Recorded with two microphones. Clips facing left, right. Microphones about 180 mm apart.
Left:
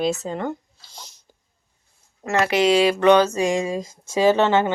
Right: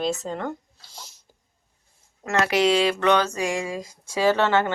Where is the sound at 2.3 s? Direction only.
Centre (ahead or behind); by 4.7 s 20° left (ahead or behind).